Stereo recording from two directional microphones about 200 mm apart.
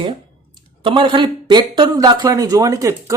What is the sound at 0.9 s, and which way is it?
A man's voice, 25° right (ahead or behind).